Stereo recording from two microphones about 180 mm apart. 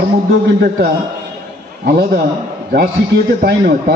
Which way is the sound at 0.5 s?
60° right (ahead or behind).